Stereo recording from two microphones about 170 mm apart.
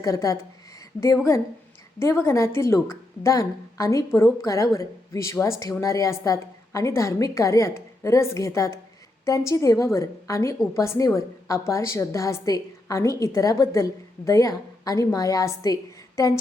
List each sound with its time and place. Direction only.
0.0 s a woman's voice: 20° left (ahead or behind)